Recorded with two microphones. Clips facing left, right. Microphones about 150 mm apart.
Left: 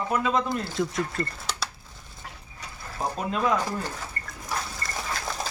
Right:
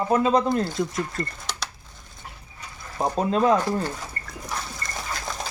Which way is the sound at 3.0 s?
30° right (ahead or behind).